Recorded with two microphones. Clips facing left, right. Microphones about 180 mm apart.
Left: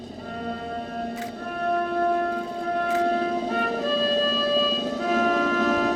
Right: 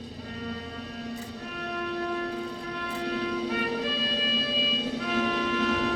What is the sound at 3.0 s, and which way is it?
Music, 45° left (ahead or behind).